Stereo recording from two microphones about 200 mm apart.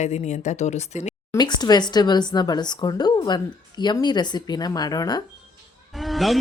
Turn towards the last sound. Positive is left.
turn(degrees=0)  # may be behind; listen again after turning